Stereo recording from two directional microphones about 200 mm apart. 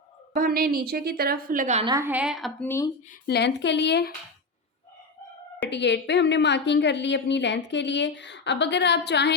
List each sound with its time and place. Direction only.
0.3 s a woman's voice: 45° right (ahead or behind)
1.8 s a woman's voice: 15° right (ahead or behind); by 2.6 s centre (ahead or behind)
2.6 s speech: 15° left (ahead or behind)
3.2 s a woman's voice: 55° left (ahead or behind)
5.6 s a woman's voice: 60° left (ahead or behind)